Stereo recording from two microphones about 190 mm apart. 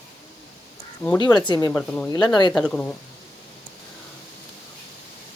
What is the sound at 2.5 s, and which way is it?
Speech, 5° left (ahead or behind).